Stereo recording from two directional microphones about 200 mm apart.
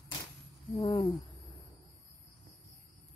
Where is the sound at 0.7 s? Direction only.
25° left (ahead or behind).